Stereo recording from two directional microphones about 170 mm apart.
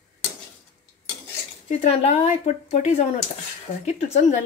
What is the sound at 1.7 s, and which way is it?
Speech, 40° left (ahead or behind).